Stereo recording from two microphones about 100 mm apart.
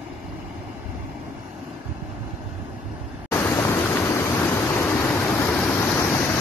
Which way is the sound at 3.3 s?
25° left (ahead or behind).